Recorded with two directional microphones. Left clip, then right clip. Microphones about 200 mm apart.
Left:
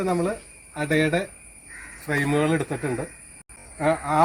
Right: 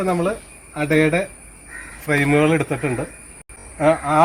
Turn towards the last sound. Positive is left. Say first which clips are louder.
# right 6 dB
turn(degrees=-15)  # may be behind; listen again after turning